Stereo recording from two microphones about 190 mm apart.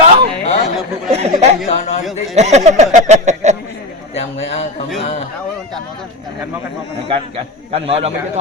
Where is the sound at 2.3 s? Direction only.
35° right (ahead or behind).